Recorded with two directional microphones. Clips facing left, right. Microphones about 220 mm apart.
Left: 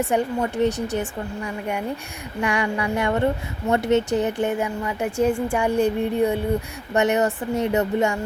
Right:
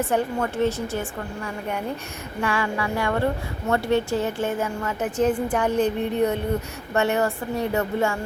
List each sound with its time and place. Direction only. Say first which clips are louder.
0.1 s a woman's voice: left 1 dB; 15° left (ahead or behind)
2.4 s a sound: left 2 dB; 20° left (ahead or behind)
3.7 s a woman's voice: left 2 dB; 20° left (ahead or behind)